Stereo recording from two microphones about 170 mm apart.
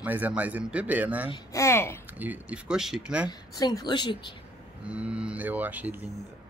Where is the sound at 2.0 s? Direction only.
10° right (ahead or behind).